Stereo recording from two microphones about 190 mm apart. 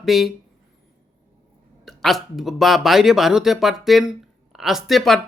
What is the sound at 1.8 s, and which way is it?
Speech, centre (ahead or behind).